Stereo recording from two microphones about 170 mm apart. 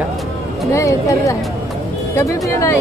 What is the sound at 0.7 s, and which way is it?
Speech, 20° left (ahead or behind).